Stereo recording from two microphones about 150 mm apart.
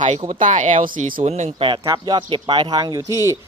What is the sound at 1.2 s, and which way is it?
Speech, 45° right (ahead or behind).